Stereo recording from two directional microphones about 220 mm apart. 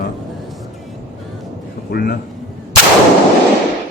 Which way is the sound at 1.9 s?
45° left (ahead or behind).